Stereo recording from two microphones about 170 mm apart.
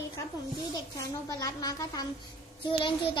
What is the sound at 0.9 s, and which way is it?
A child's voice, 20° left (ahead or behind).